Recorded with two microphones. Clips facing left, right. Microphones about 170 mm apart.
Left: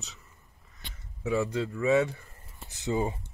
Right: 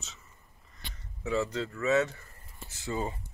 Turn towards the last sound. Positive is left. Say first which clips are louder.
# left 5 dB
turn(degrees=20)  # may be behind; listen again after turning